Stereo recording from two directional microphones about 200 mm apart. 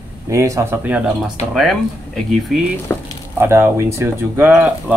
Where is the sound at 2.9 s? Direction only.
10° left (ahead or behind).